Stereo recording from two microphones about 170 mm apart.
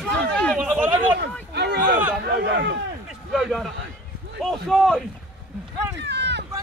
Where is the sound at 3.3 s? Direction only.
Centre (ahead or behind).